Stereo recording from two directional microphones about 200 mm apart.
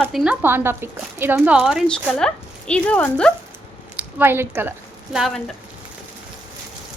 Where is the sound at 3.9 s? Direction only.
10° right (ahead or behind).